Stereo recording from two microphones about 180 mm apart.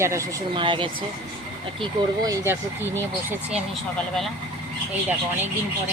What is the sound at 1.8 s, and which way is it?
Speech, 15° right (ahead or behind).